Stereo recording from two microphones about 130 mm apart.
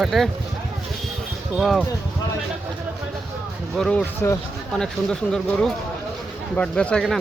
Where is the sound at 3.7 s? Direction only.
5° left (ahead or behind).